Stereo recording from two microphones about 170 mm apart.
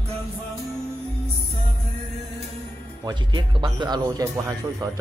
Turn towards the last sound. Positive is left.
turn(degrees=-20)  # may be behind; listen again after turning